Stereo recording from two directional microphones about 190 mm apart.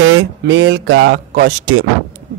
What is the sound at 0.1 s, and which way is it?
Speech, 80° right.